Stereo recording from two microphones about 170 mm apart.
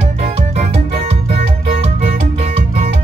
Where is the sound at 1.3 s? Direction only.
35° right (ahead or behind).